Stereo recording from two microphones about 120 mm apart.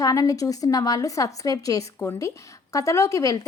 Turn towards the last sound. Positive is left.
turn(degrees=25)  # may be behind; listen again after turning